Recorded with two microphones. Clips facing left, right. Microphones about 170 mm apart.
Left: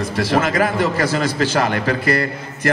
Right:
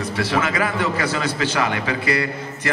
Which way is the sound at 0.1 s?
45° left (ahead or behind).